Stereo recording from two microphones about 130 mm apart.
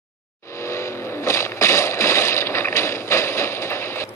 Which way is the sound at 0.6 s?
20° left (ahead or behind).